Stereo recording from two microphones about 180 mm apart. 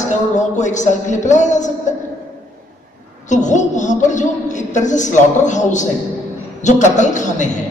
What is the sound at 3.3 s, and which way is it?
A woman's voice, 40° left (ahead or behind).